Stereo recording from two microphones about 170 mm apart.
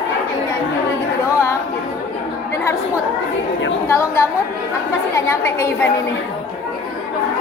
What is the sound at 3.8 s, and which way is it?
Speech, 15° left (ahead or behind).